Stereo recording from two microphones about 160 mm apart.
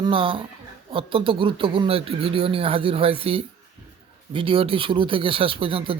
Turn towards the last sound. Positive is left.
turn(degrees=-35)  # may be behind; listen again after turning